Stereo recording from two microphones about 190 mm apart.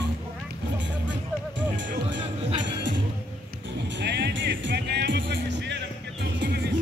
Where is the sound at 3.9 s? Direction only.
65° right (ahead or behind).